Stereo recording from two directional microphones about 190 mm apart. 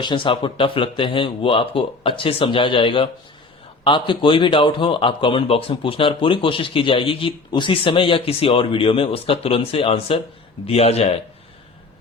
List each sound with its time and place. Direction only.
0.0 s a man's voice: 25° left (ahead or behind)